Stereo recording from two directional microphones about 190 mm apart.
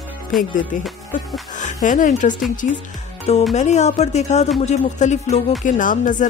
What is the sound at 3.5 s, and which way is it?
Music, 35° left (ahead or behind).